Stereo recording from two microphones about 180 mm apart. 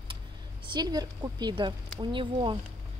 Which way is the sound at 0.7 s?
20° right (ahead or behind).